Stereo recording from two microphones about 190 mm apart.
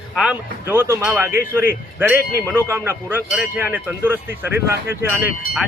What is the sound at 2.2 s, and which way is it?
Speech, 50° left (ahead or behind).